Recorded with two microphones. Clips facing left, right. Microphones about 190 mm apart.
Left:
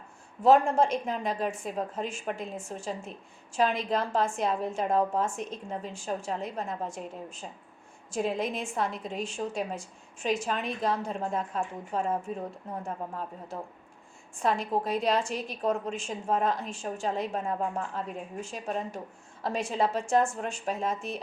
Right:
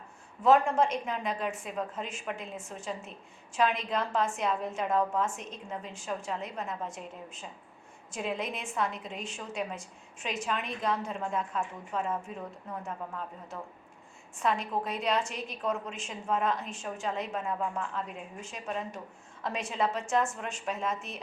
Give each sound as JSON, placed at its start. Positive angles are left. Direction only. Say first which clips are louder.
{"t": 0.4, "sound": "a woman's voice", "louder": "left 2 dB", "side_deg": 30}
{"t": 8.1, "sound": "a woman's voice", "louder": "left 5 dB", "side_deg": 35}